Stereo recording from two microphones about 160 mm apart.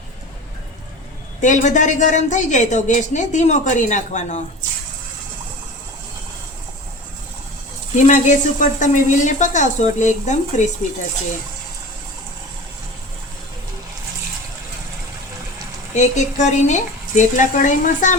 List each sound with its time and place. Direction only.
1.4 s a woman's voice: 50° left (ahead or behind)
8.0 s a woman's voice: 50° left (ahead or behind)
16.0 s a woman's voice: 50° left (ahead or behind)